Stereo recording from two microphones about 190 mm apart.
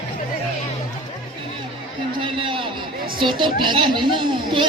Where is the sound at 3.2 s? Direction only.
25° right (ahead or behind).